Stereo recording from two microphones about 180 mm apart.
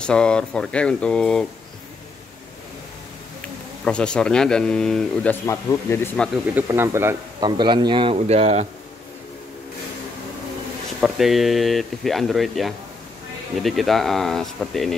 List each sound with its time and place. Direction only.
0.0 s speech: 5° left (ahead or behind)
3.8 s speech: 5° left (ahead or behind)
6.5 s speech: 15° right (ahead or behind)
7.3 s a man's voice: 25° right (ahead or behind)
11.0 s speech: centre (ahead or behind)